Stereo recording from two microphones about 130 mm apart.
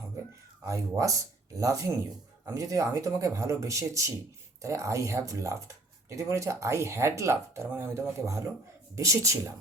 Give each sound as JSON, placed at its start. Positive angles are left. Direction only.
{"t": 0.6, "sound": "speech", "side_deg": -25}